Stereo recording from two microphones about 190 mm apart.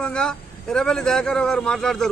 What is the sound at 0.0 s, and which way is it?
A man's voice, 5° left (ahead or behind).